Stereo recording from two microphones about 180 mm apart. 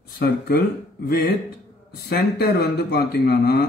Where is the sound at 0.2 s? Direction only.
60° left (ahead or behind).